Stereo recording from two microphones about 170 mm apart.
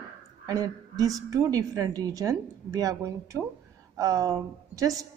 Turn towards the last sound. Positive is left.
turn(degrees=-20)  # may be behind; listen again after turning